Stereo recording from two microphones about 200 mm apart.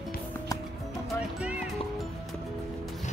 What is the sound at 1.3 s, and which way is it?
Music, 5° right (ahead or behind).